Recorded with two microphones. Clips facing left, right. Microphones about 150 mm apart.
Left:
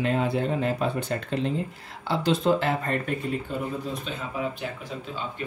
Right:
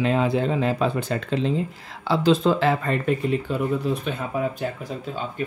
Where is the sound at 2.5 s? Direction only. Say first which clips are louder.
Right 3 dB; 90° right.